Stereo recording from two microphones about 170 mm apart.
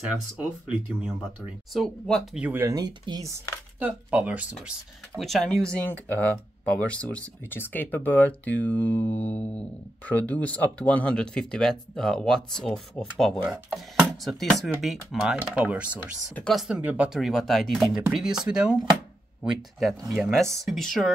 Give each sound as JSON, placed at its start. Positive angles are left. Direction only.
{"t": 0.4, "sound": "speech", "side_deg": -5}
{"t": 2.4, "sound": "speech", "side_deg": -15}
{"t": 3.8, "sound": "speech", "side_deg": -10}
{"t": 13.4, "sound": "speech", "side_deg": -5}
{"t": 20.0, "sound": "speech", "side_deg": -20}
{"t": 20.5, "sound": "speech", "side_deg": 0}